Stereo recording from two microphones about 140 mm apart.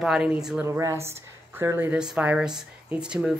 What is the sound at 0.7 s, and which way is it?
Speech, 20° right (ahead or behind).